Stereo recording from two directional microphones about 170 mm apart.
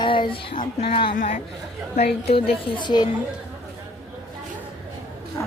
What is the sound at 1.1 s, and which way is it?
A man's voice, 50° left (ahead or behind).